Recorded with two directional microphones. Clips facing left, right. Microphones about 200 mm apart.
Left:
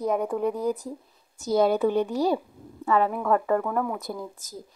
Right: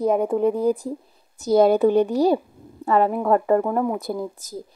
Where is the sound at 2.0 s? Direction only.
35° right (ahead or behind).